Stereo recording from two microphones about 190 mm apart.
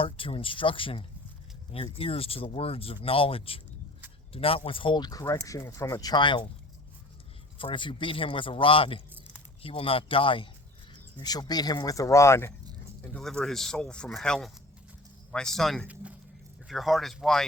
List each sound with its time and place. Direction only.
0.0 s speech: 30° left (ahead or behind)
7.6 s speech: 25° left (ahead or behind)
13.1 s speech: 5° left (ahead or behind)